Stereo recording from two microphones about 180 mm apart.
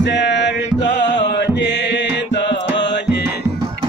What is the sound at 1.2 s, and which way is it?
Chant, 80° left.